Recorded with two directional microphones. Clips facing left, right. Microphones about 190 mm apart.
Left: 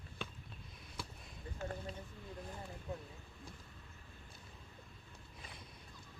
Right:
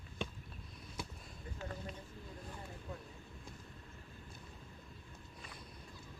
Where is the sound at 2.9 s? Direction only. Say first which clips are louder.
Left 4 dB; 25° left (ahead or behind).